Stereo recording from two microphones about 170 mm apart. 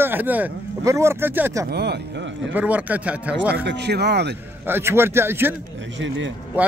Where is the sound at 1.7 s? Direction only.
75° right (ahead or behind).